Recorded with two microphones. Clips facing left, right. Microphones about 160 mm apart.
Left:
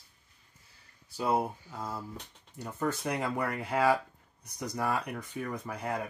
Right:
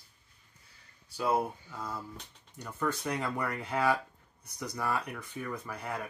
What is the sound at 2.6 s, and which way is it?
Speech, 20° left (ahead or behind).